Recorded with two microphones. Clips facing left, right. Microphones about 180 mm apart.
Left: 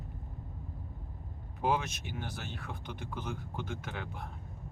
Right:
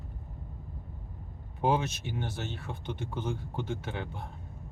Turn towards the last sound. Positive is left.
turn(degrees=-30)  # may be behind; listen again after turning